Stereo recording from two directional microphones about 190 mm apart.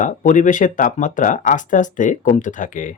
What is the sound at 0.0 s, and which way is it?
Speech, 40° left (ahead or behind).